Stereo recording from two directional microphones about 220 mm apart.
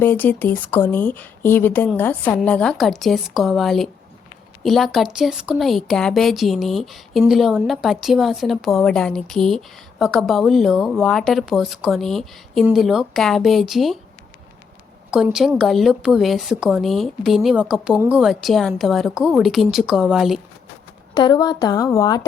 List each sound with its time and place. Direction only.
0.0 s speech: 10° left (ahead or behind)
15.1 s speech: 5° right (ahead or behind)
21.2 s speech: 20° left (ahead or behind)